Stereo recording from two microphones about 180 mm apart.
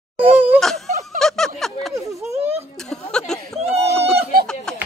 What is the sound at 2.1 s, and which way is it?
Speech, 15° right (ahead or behind).